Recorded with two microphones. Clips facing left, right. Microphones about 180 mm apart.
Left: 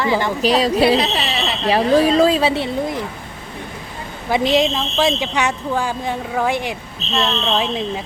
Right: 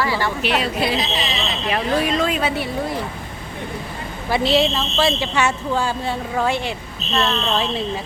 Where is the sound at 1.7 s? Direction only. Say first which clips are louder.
Left 7 dB; 35° left (ahead or behind).